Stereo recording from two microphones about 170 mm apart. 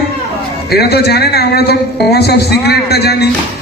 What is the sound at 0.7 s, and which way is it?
A man's voice, 70° left (ahead or behind).